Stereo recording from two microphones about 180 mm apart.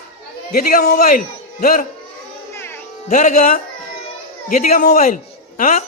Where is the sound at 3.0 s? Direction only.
45° left (ahead or behind).